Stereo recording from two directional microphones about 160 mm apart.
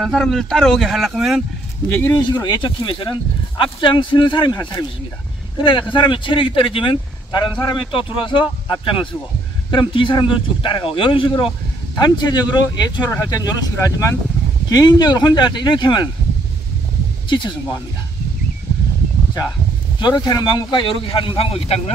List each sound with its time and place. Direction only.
0.0 s speech: centre (ahead or behind)
1.9 s speech: 15° left (ahead or behind)
2.1 s speech: 25° left (ahead or behind)
20.0 s speech: 25° left (ahead or behind)